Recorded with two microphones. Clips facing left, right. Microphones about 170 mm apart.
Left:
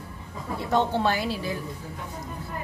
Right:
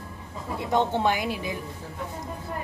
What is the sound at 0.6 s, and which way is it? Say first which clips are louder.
A woman's voice: even; 15° right (ahead or behind).